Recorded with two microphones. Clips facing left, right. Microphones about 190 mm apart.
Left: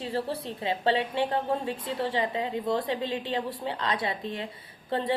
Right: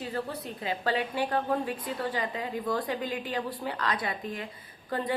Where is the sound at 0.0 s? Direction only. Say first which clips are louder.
Left 3 dB; 30° left (ahead or behind).